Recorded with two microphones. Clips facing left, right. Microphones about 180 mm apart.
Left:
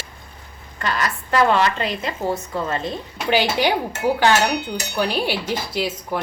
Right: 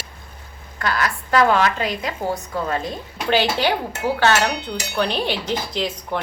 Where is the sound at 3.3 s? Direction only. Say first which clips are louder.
Even; 15° left (ahead or behind).